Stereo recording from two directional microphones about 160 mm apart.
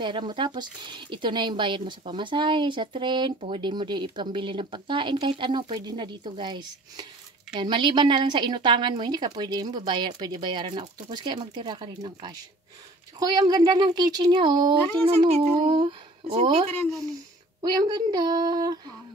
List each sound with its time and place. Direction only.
0.0 s a woman's voice: 30° right (ahead or behind)
17.6 s a woman's voice: 25° right (ahead or behind)